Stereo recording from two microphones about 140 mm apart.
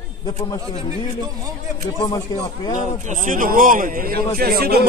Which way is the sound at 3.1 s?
65° right (ahead or behind).